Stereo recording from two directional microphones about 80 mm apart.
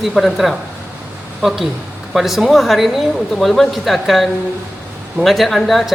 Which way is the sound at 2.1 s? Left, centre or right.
Centre.